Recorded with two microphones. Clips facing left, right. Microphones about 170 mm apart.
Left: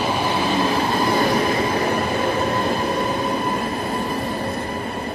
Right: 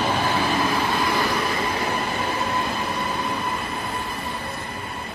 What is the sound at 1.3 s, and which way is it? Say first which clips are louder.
Vehicle: left 5 dB; 40° left (ahead or behind).